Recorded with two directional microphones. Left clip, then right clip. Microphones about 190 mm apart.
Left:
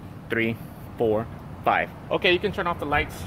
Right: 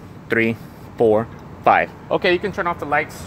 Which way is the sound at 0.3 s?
50° right (ahead or behind).